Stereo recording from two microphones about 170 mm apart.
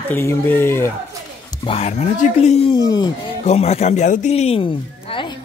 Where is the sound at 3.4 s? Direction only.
40° left (ahead or behind).